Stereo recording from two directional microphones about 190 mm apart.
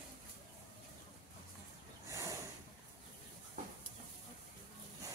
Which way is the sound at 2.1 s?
15° right (ahead or behind).